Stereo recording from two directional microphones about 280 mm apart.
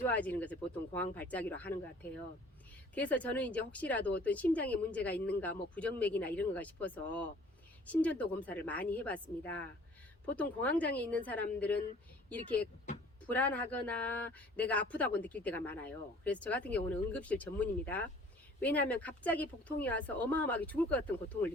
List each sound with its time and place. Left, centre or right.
0.0 s speech: centre
2.9 s speech: centre
13.2 s speech: centre